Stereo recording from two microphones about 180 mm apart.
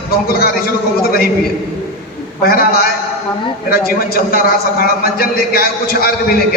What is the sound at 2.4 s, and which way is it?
A man's voice, 55° left (ahead or behind).